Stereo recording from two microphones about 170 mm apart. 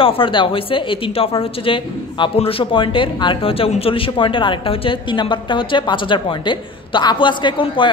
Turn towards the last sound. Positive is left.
turn(degrees=30)  # may be behind; listen again after turning